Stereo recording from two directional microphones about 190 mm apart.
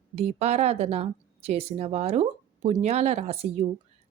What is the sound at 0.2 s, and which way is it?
Speech, 35° right (ahead or behind).